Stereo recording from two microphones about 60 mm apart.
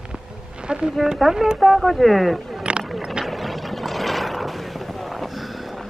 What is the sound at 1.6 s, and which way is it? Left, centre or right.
Speech, centre.